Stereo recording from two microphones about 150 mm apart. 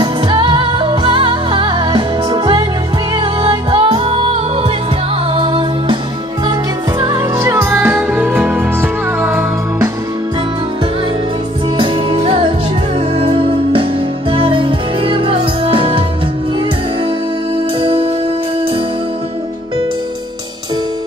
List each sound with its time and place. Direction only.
0.0 s music: 35° right (ahead or behind)
7.0 s music: 20° right (ahead or behind)
11.7 s music: 35° right (ahead or behind)
17.7 s music: 35° right (ahead or behind)